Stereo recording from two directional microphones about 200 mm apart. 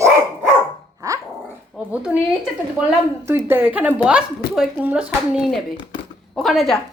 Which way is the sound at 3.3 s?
10° right (ahead or behind).